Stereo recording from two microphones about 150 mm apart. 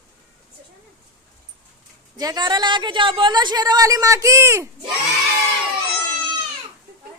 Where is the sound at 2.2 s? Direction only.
25° right (ahead or behind).